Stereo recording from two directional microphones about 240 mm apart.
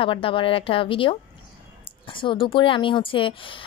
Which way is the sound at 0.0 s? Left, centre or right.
Left.